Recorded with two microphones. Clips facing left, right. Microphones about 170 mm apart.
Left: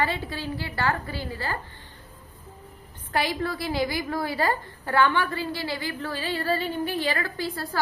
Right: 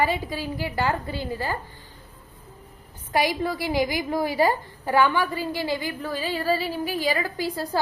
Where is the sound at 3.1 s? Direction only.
15° right (ahead or behind).